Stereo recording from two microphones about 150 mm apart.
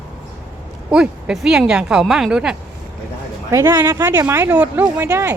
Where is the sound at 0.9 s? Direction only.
5° right (ahead or behind).